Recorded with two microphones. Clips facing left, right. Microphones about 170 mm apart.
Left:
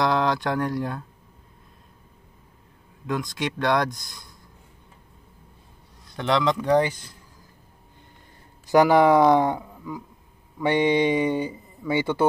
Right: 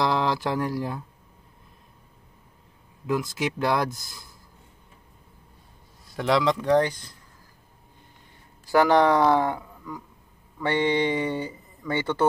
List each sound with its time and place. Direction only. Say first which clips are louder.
0.0 s speech: left 2 dB; centre (ahead or behind)
3.1 s speech: right 1 dB; 5° right (ahead or behind)
6.0 s speech: even; centre (ahead or behind)
8.6 s speech: left 2 dB; 15° left (ahead or behind)